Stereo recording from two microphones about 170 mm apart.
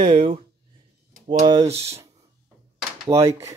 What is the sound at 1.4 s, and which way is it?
Speech, 25° right (ahead or behind).